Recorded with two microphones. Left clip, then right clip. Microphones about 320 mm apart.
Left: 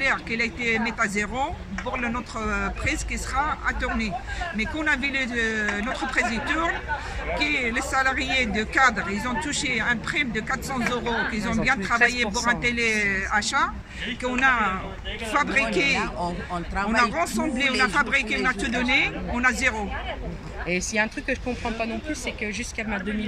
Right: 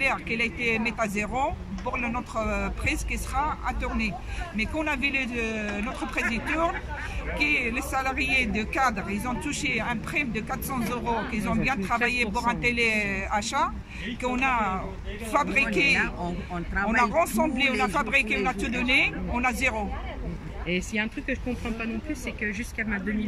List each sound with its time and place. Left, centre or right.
0.0 s speech: centre
17.1 s speech: centre
20.6 s speech: centre
22.5 s speech: centre